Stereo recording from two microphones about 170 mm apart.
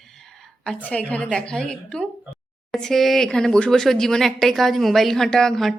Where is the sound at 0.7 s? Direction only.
10° left (ahead or behind).